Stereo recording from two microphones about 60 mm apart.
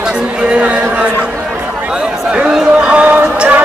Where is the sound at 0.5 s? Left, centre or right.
Right.